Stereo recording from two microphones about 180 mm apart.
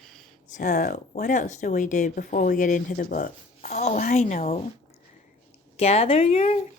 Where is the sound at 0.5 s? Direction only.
45° left (ahead or behind).